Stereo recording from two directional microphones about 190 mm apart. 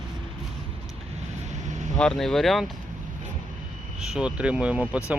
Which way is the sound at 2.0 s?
5° left (ahead or behind).